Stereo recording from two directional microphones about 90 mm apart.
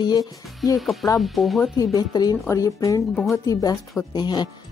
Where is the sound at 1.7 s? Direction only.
45° left (ahead or behind).